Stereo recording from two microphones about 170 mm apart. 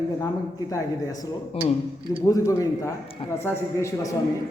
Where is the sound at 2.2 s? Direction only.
20° left (ahead or behind).